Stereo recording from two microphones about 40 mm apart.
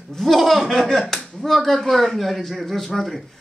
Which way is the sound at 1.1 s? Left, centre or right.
Centre.